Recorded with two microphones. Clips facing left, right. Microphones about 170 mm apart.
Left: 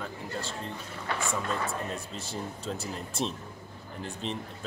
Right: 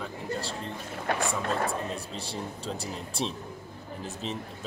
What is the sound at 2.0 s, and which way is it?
Speech, 35° right (ahead or behind).